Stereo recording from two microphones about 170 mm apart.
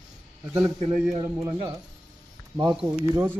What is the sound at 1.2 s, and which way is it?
Speech, 20° right (ahead or behind).